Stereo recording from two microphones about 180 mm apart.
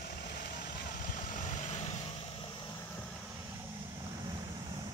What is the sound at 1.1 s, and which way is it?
Vehicle, 45° left (ahead or behind).